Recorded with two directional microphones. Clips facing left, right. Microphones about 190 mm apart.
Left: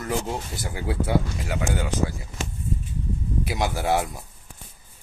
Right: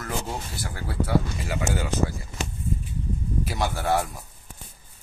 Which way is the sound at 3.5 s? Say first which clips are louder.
Left 2 dB; 10° left (ahead or behind).